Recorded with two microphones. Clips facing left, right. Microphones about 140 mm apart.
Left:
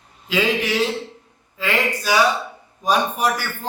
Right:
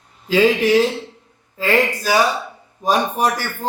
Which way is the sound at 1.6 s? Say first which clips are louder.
Right 5 dB; 35° right (ahead or behind).